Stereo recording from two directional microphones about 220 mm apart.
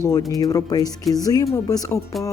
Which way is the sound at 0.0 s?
15° left (ahead or behind).